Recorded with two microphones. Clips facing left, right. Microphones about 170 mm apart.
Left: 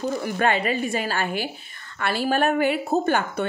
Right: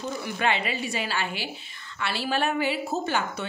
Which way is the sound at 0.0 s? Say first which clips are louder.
Left 5 dB; 45° left (ahead or behind).